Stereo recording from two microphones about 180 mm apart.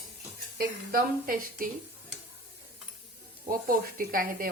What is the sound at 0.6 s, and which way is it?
A woman's voice, 55° right (ahead or behind).